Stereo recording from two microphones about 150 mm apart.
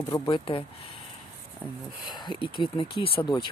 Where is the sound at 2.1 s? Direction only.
30° left (ahead or behind).